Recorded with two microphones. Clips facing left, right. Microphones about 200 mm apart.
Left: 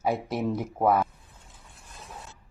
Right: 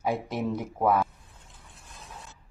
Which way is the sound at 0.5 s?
5° left (ahead or behind).